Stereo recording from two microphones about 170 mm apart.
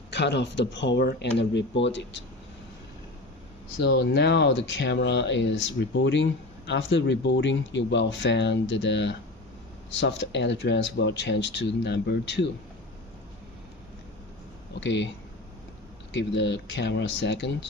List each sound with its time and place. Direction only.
0.1 s a man's voice: 90° left
3.8 s a man's voice: 80° left
14.8 s a man's voice: 90° left
16.1 s a man's voice: 90° left